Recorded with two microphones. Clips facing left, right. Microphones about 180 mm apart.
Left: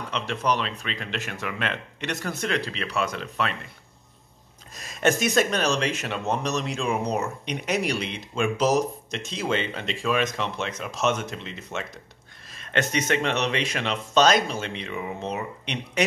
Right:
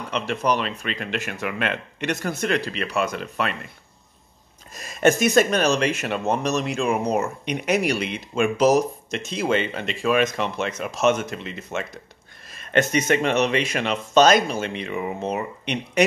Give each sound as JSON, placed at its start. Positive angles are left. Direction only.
{"t": 0.3, "sound": "speech", "side_deg": -5}
{"t": 4.7, "sound": "speech", "side_deg": 0}
{"t": 13.1, "sound": "speech", "side_deg": -10}
{"t": 15.6, "sound": "speech", "side_deg": -50}